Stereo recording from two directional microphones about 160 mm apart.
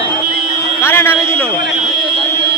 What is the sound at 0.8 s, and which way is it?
Speech, 15° left (ahead or behind).